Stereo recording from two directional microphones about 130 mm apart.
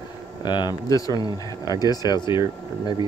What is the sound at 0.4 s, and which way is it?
Speech, 35° left (ahead or behind).